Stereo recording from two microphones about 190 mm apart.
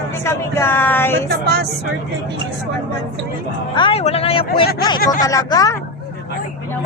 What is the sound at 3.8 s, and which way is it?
Speech, 30° left (ahead or behind).